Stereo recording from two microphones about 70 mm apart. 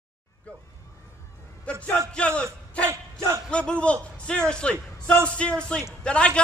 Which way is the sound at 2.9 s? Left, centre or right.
Right.